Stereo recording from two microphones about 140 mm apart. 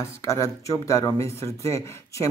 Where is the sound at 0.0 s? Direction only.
20° left (ahead or behind).